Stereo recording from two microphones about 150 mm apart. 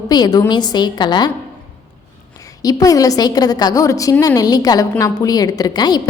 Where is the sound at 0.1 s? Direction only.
25° left (ahead or behind).